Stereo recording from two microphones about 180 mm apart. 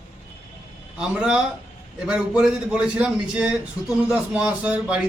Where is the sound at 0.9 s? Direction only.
5° right (ahead or behind).